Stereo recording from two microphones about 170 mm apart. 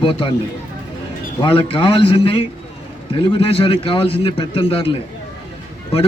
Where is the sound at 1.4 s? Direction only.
30° left (ahead or behind).